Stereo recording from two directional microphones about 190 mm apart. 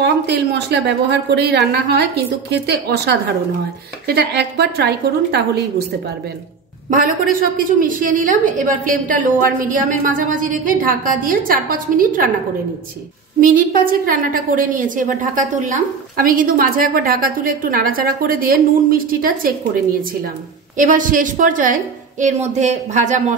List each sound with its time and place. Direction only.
0.0 s a woman's voice: 60° right (ahead or behind)
6.9 s a woman's voice: 45° right (ahead or behind)
13.4 s a woman's voice: 45° right (ahead or behind)